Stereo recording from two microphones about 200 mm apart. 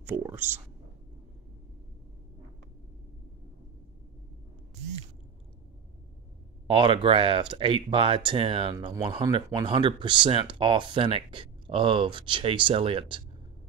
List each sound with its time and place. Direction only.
0.0 s speech: 10° right (ahead or behind)
6.7 s speech: 25° right (ahead or behind)